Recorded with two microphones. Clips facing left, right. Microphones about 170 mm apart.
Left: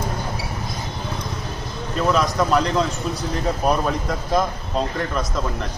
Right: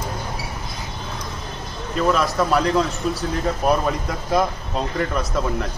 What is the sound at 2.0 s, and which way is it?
A man's voice, centre (ahead or behind).